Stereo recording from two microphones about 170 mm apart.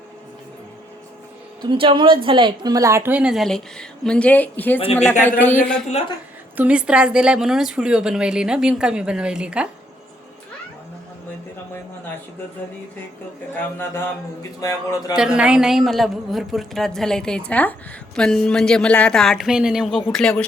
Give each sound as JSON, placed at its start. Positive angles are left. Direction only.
{"t": 1.7, "sound": "a woman's voice", "side_deg": -30}
{"t": 4.8, "sound": "speech", "side_deg": 35}
{"t": 5.4, "sound": "speech", "side_deg": 10}
{"t": 6.6, "sound": "a woman's voice", "side_deg": -5}
{"t": 13.6, "sound": "speech", "side_deg": 10}
{"t": 15.1, "sound": "a woman's voice", "side_deg": -5}